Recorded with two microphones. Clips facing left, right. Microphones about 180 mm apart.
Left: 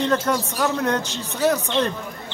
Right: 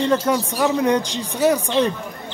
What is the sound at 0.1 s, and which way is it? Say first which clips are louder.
A man's voice: right 3 dB; 10° right (ahead or behind).